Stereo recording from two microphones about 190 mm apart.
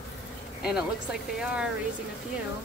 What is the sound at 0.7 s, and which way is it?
Speech, 5° right (ahead or behind).